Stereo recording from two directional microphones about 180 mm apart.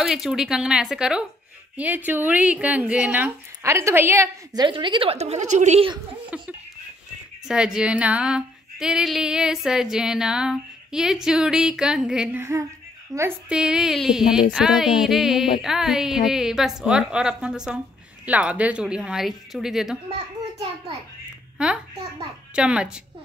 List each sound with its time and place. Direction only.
0.0 s a woman's voice: centre (ahead or behind)
4.6 s a woman's voice: 25° right (ahead or behind)
6.3 s a woman's voice: 5° right (ahead or behind)
21.6 s speech: 5° right (ahead or behind)